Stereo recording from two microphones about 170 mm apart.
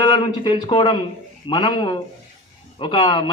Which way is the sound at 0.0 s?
25° left (ahead or behind).